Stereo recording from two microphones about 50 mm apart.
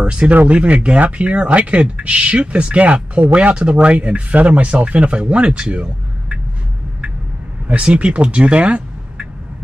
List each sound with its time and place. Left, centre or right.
0.0 s speech: right
7.6 s speech: right